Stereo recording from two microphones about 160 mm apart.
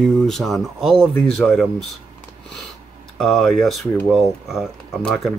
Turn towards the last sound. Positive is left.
turn(degrees=0)  # may be behind; listen again after turning